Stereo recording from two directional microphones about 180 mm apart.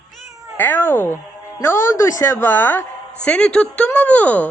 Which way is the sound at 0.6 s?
10° left (ahead or behind).